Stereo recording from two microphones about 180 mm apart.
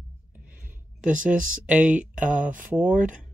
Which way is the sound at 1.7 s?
5° right (ahead or behind).